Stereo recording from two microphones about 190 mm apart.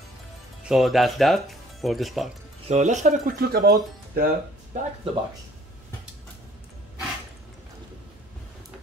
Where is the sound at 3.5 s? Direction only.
50° right (ahead or behind).